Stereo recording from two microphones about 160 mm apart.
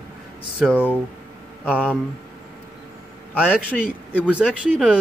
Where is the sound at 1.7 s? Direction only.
10° right (ahead or behind).